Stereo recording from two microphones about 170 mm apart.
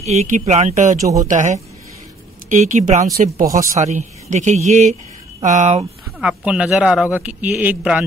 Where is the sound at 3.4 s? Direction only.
20° right (ahead or behind).